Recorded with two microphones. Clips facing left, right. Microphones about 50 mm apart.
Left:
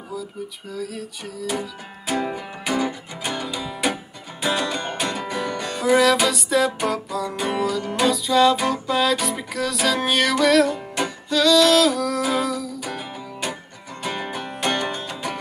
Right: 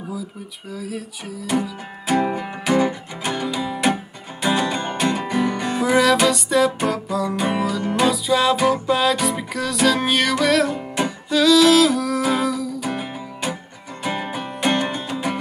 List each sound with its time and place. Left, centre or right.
0.7 s music: centre
5.9 s music: centre